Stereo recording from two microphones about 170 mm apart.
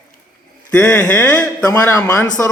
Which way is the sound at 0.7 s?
10° left (ahead or behind).